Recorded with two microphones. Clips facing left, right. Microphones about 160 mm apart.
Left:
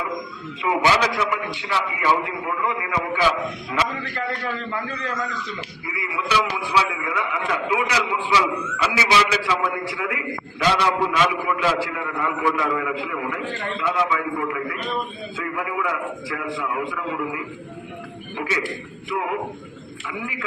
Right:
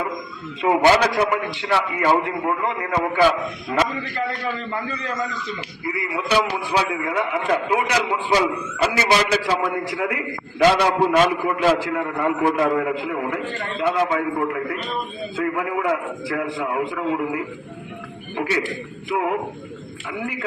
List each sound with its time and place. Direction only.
0.6 s a man's voice: 45° right (ahead or behind)
5.9 s a man's voice: 45° right (ahead or behind)